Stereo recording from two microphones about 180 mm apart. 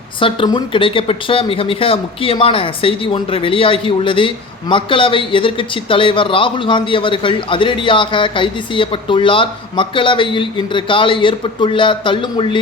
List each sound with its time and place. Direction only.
0.2 s speech: 30° left (ahead or behind)